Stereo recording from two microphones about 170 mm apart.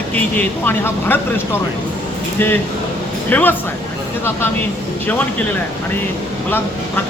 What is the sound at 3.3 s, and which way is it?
Speech, 10° left (ahead or behind).